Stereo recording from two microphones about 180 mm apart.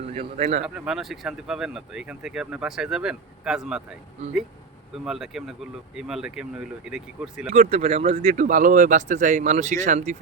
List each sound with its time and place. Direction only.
0.1 s speech: 35° right (ahead or behind)
0.6 s speech: 5° right (ahead or behind)
5.0 s speech: centre (ahead or behind)
7.5 s speech: 35° right (ahead or behind)